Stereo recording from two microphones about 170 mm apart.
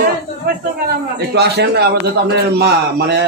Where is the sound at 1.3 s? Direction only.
75° right (ahead or behind).